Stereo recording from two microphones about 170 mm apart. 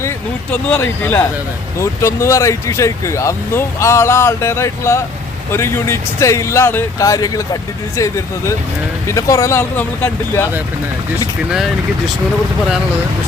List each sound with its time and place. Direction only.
0.5 s speech: 10° left (ahead or behind)
11.5 s speech: centre (ahead or behind)